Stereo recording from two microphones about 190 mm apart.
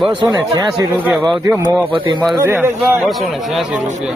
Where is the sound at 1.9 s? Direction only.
25° right (ahead or behind).